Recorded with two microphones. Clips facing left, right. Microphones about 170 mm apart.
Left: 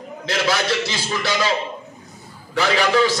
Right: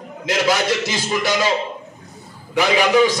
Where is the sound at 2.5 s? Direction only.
15° right (ahead or behind).